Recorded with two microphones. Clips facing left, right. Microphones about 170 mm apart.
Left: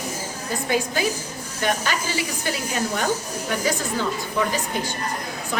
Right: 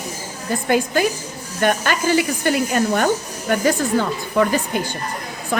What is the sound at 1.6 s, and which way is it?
A woman's voice, 55° right (ahead or behind).